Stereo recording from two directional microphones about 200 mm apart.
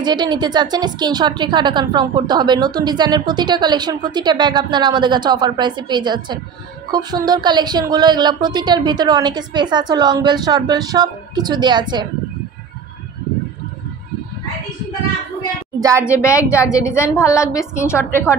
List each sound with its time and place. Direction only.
0.0 s a woman's voice: 20° right (ahead or behind)
16.0 s a woman's voice: 15° left (ahead or behind)